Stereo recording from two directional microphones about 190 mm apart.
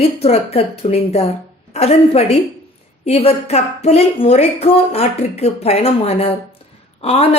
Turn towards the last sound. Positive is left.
turn(degrees=30)  # may be behind; listen again after turning